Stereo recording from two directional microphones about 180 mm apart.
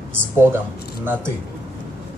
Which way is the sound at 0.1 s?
10° right (ahead or behind).